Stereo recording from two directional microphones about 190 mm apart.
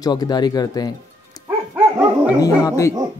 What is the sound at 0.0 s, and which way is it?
Speech, 20° left (ahead or behind).